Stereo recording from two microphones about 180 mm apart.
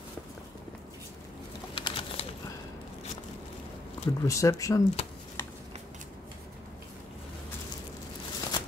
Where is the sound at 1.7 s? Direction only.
30° left (ahead or behind).